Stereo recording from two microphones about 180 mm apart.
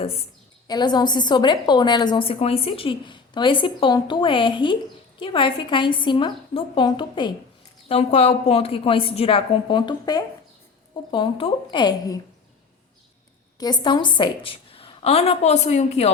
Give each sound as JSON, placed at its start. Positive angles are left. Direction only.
{"t": 0.7, "sound": "a woman's voice", "side_deg": 25}
{"t": 13.6, "sound": "a woman's voice", "side_deg": 25}